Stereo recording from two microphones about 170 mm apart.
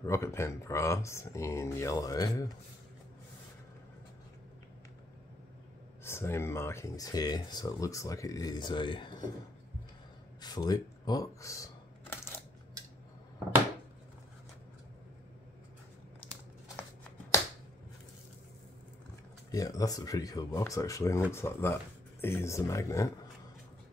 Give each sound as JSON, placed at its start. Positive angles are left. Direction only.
{"t": 0.0, "sound": "speech", "side_deg": 15}
{"t": 6.0, "sound": "speech", "side_deg": 15}
{"t": 10.4, "sound": "a sound", "side_deg": 25}
{"t": 16.2, "sound": "biting", "side_deg": 15}
{"t": 19.5, "sound": "speech", "side_deg": 20}